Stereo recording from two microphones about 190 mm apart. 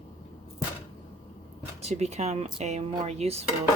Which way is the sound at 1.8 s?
35° right (ahead or behind).